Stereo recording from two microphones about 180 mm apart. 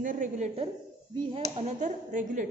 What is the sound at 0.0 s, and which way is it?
Speech, 45° right (ahead or behind).